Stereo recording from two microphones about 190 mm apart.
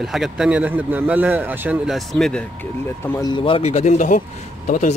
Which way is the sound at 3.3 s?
25° left (ahead or behind).